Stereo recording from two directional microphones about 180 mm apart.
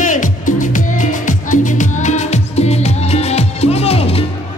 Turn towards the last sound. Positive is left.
turn(degrees=35)  # may be behind; listen again after turning